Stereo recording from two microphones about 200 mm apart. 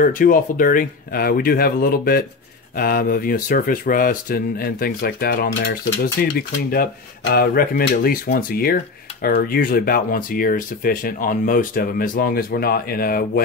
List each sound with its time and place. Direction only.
0.0 s speech: 45° left (ahead or behind)